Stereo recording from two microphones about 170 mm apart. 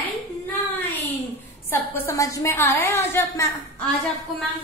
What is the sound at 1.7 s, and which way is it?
A woman's voice, 15° left (ahead or behind).